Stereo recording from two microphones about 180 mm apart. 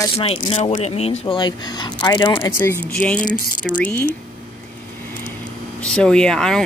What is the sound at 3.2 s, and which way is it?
Speech, 45° left (ahead or behind).